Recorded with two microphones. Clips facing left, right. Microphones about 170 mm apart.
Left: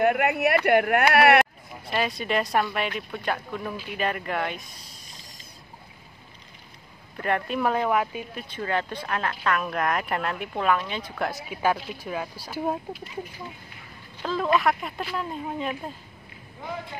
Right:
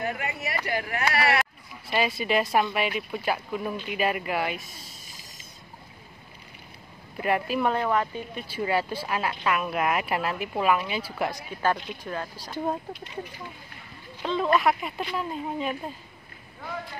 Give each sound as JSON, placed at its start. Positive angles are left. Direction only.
{"t": 0.0, "sound": "speech", "side_deg": 65}
{"t": 1.9, "sound": "speech", "side_deg": -5}
{"t": 7.2, "sound": "speech", "side_deg": -5}
{"t": 8.5, "sound": "speech", "side_deg": -10}
{"t": 14.2, "sound": "speech", "side_deg": 0}